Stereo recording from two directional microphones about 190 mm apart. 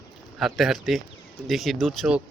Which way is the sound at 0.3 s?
Centre (ahead or behind).